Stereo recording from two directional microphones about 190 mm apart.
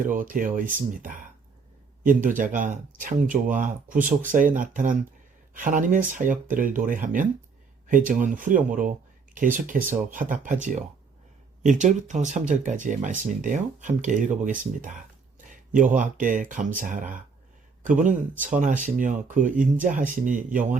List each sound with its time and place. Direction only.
0.0 s speech: 45° right (ahead or behind)